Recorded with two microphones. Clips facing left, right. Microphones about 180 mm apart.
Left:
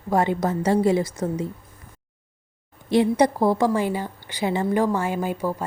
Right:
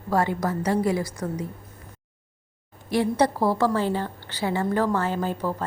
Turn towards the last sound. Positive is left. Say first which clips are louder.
# left 1 dB
turn(degrees=10)  # may be behind; listen again after turning